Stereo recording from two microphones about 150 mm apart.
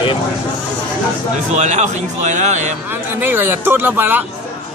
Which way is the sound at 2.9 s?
15° right (ahead or behind).